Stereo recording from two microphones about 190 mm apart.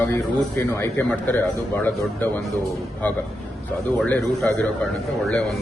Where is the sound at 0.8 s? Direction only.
10° left (ahead or behind).